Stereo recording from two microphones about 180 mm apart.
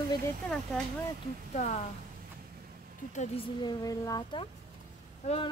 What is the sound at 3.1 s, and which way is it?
A woman's voice, 30° left (ahead or behind).